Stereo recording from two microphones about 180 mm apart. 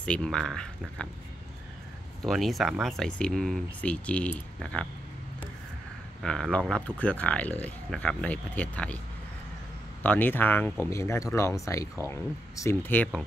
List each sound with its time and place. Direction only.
0.0 s speech: 5° left (ahead or behind)
2.2 s speech: centre (ahead or behind)
6.2 s speech: 5° left (ahead or behind)
10.0 s speech: 10° left (ahead or behind)